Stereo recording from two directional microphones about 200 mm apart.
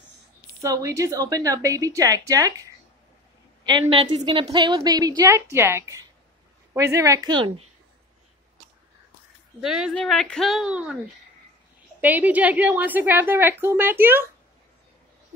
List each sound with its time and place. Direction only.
0.6 s a woman's voice: 15° right (ahead or behind)
9.6 s speech: 5° right (ahead or behind)
12.0 s a woman's voice: 10° right (ahead or behind)